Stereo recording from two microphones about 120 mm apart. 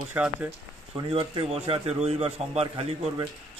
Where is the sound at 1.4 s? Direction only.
60° right (ahead or behind).